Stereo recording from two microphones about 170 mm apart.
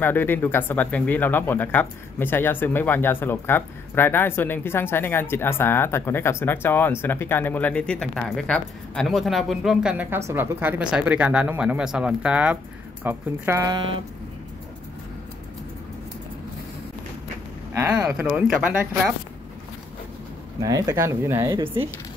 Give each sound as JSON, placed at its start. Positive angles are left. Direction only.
{"t": 0.0, "sound": "speech", "side_deg": 10}
{"t": 13.7, "sound": "speech", "side_deg": -30}
{"t": 17.9, "sound": "speech", "side_deg": -10}
{"t": 20.6, "sound": "speech", "side_deg": -20}